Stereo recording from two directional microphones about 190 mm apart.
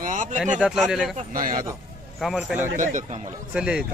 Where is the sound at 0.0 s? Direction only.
40° right (ahead or behind).